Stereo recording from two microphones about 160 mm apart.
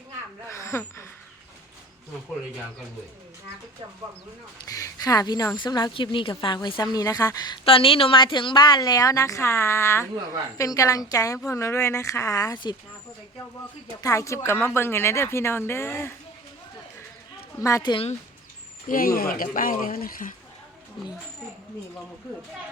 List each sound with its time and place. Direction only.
0.4 s a sound: 15° left (ahead or behind)
4.6 s a woman's voice: 20° left (ahead or behind)
14.0 s speech: 20° left (ahead or behind)
17.6 s a woman's voice: 20° left (ahead or behind)
17.9 s speech: 40° left (ahead or behind)
18.9 s speech: 65° left (ahead or behind)